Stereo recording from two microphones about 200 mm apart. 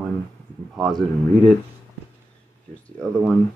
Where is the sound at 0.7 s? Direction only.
Centre (ahead or behind).